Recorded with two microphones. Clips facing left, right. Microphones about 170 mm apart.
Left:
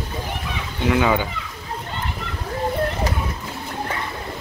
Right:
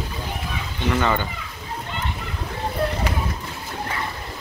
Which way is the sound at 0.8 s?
10° left (ahead or behind).